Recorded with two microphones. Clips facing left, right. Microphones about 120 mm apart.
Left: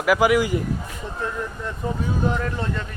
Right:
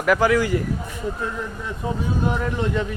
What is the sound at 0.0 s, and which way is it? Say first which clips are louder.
Speech: even; 10° left (ahead or behind).